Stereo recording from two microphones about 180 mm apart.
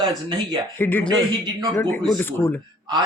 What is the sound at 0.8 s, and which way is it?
Speech, 10° left (ahead or behind).